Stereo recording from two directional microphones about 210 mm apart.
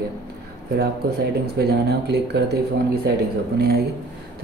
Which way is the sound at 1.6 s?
50° right (ahead or behind).